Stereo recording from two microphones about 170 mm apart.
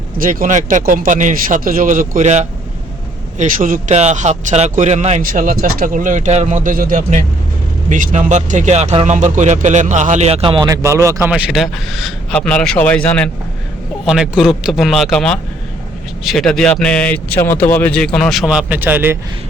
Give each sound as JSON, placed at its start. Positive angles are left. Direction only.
{"t": 0.2, "sound": "a man's voice", "side_deg": -55}
{"t": 10.7, "sound": "speech", "side_deg": -20}
{"t": 11.3, "sound": "speech", "side_deg": -5}